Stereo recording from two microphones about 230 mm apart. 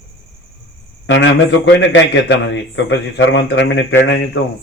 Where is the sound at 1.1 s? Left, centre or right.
Left.